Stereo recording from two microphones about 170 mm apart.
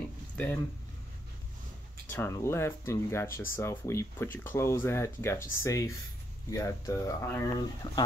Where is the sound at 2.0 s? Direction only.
15° left (ahead or behind).